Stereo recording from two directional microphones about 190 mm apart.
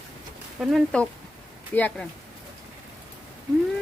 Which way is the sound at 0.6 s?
Centre (ahead or behind).